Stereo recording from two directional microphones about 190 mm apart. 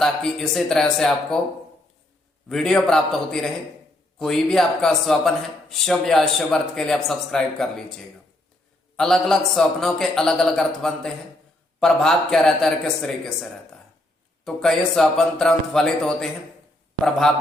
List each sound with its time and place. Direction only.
0.0 s speech: 5° left (ahead or behind)
2.5 s speech: centre (ahead or behind)
9.0 s speech: centre (ahead or behind)